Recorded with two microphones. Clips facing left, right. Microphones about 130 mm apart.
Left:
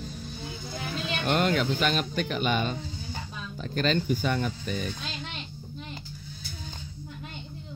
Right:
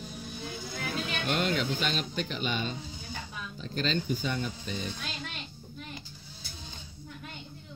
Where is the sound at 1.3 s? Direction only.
50° left (ahead or behind).